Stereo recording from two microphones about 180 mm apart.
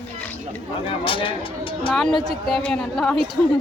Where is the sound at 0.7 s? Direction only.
30° left (ahead or behind).